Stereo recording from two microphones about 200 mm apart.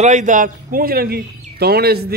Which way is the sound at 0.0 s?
35° right (ahead or behind).